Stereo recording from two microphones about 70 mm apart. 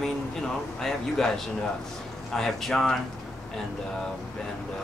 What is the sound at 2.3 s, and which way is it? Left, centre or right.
Speech, centre.